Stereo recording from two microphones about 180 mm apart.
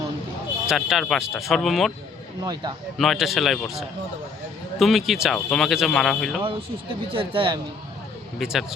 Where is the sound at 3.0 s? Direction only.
Centre (ahead or behind).